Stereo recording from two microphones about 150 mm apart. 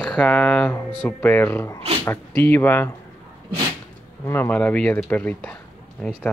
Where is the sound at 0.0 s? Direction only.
5° left (ahead or behind).